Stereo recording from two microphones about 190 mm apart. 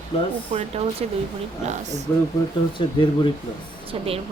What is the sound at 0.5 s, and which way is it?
Speech, 40° right (ahead or behind).